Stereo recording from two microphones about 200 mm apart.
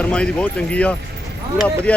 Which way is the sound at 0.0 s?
5° left (ahead or behind).